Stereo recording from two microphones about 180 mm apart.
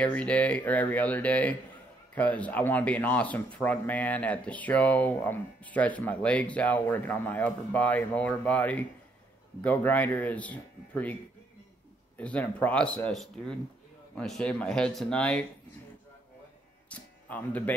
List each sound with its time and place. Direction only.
0.0 s speech: 5° left (ahead or behind)
12.2 s speech: 5° left (ahead or behind)
16.9 s music: 10° left (ahead or behind)